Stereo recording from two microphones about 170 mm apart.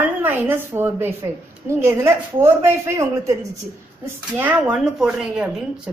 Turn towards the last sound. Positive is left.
turn(degrees=-5)  # may be behind; listen again after turning